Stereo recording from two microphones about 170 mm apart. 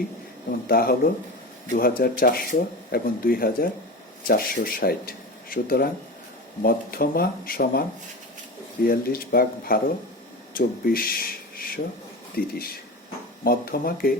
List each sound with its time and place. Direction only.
0.7 s speech: 60° left (ahead or behind)